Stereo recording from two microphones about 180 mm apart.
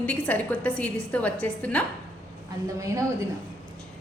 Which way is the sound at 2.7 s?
15° right (ahead or behind).